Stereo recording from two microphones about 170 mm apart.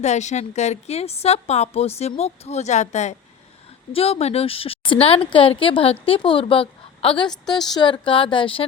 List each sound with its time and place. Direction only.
0.0 s speech: 45° left (ahead or behind)